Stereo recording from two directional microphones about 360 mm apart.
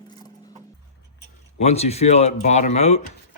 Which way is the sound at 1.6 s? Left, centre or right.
Centre.